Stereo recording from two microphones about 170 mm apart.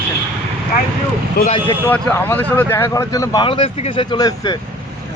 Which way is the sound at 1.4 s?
65° left (ahead or behind).